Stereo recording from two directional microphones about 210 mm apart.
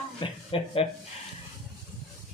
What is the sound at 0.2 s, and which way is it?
Speech, 25° left (ahead or behind).